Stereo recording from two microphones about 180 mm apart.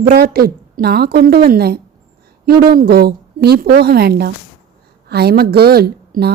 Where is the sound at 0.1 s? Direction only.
60° right (ahead or behind).